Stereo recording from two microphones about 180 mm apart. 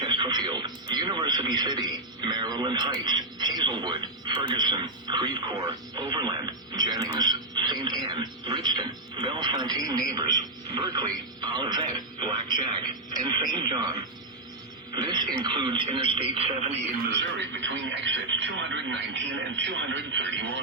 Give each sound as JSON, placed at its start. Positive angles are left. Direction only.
{"t": 0.0, "sound": "radio", "side_deg": -25}
{"t": 14.9, "sound": "radio", "side_deg": -25}
{"t": 17.3, "sound": "radio", "side_deg": -85}